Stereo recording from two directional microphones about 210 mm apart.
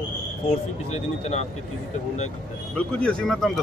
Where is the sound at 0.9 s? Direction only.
30° left (ahead or behind).